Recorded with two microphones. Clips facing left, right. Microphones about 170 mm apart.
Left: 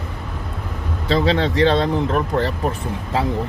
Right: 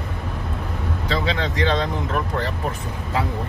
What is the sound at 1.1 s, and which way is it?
Speech, 35° left (ahead or behind).